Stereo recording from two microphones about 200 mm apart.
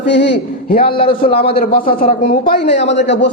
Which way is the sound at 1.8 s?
45° left (ahead or behind).